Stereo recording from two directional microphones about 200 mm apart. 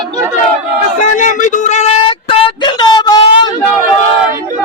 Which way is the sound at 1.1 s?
40° left (ahead or behind).